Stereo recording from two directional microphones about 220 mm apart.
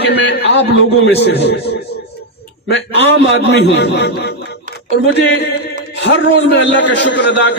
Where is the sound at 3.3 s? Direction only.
50° left (ahead or behind).